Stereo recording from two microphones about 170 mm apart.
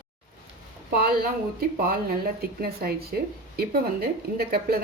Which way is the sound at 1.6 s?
60° right (ahead or behind).